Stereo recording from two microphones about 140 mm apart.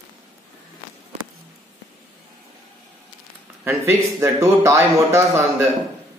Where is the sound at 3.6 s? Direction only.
20° right (ahead or behind).